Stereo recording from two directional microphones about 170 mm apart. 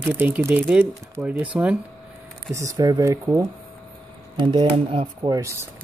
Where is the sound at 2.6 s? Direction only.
20° right (ahead or behind).